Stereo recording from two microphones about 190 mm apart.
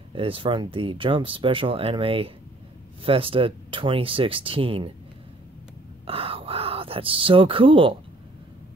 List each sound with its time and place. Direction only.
0.1 s speech: 30° right (ahead or behind)
6.0 s speech: 30° right (ahead or behind)